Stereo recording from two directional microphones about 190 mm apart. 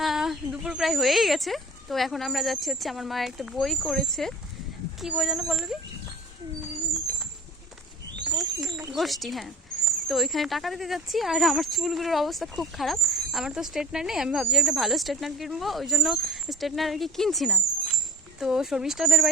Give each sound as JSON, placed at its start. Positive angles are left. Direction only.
{"t": 0.0, "sound": "speech", "side_deg": 0}
{"t": 8.3, "sound": "a sound", "side_deg": -20}
{"t": 8.9, "sound": "speech", "side_deg": 0}